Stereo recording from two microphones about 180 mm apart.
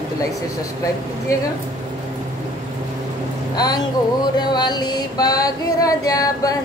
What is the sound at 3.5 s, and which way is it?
Female singing, 20° left (ahead or behind).